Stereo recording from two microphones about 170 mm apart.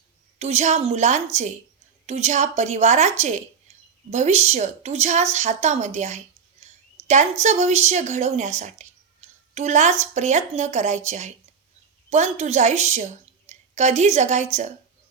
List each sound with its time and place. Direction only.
0.3 s a woman's voice: 40° right (ahead or behind)